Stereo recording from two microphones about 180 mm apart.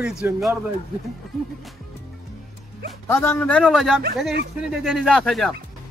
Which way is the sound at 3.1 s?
15° left (ahead or behind).